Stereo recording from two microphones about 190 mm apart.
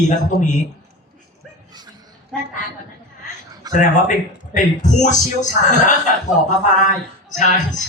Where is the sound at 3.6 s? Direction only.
20° right (ahead or behind).